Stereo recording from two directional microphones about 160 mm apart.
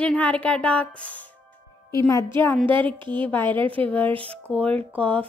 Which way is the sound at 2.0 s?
20° left (ahead or behind).